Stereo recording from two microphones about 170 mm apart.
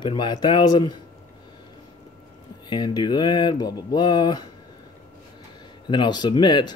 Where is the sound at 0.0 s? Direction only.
25° left (ahead or behind).